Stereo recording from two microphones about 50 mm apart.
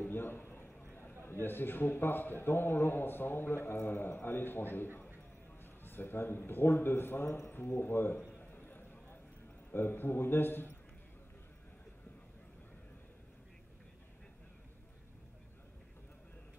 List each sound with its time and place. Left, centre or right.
0.0 s a sound: left
1.2 s a man's voice: left
8.4 s clip-clop: left
9.7 s a man's voice: left